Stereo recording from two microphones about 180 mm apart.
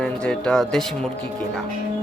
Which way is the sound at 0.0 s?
5° left (ahead or behind).